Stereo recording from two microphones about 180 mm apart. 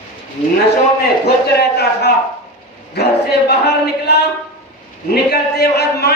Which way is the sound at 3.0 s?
65° left (ahead or behind).